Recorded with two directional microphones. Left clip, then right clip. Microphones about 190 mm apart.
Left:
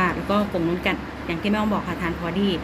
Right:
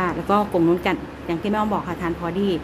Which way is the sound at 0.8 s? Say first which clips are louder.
Right 1 dB; 25° right (ahead or behind).